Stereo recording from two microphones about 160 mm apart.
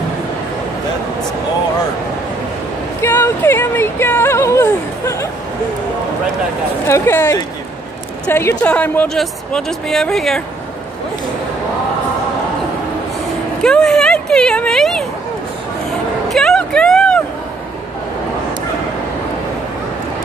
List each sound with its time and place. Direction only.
3.0 s speech: 15° left (ahead or behind)
6.9 s speech: 15° left (ahead or behind)
13.6 s speech: 5° left (ahead or behind)
16.3 s a sound: centre (ahead or behind)